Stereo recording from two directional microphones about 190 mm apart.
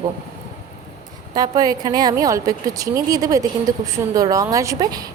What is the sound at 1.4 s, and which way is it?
A woman's voice, 20° right (ahead or behind).